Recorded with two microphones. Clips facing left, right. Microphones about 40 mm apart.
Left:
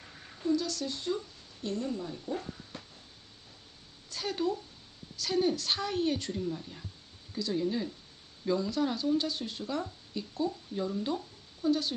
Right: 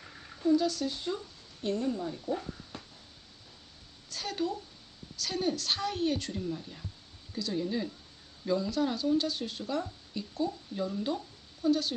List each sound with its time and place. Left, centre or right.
0.4 s speech: centre
1.6 s speech: right
1.9 s speech: centre
4.1 s a woman's voice: centre